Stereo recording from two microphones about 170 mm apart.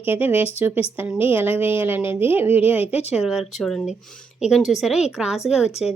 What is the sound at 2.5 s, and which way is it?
Speech, 35° left (ahead or behind).